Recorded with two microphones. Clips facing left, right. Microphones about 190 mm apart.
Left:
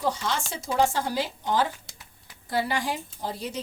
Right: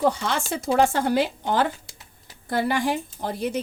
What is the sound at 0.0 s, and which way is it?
Speech, 60° right (ahead or behind).